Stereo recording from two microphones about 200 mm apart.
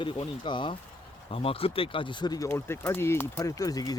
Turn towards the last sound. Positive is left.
turn(degrees=20)  # may be behind; listen again after turning